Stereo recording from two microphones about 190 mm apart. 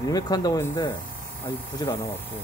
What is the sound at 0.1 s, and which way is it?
Speech, 20° left (ahead or behind).